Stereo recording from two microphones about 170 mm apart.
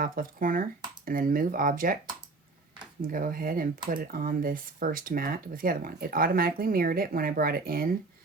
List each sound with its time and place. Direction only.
0.0 s speech: 55° right (ahead or behind)
3.1 s speech: 55° right (ahead or behind)